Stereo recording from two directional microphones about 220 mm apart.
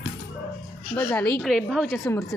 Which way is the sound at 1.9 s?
10° left (ahead or behind).